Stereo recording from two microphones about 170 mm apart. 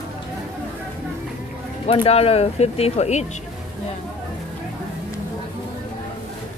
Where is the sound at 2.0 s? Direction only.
35° left (ahead or behind).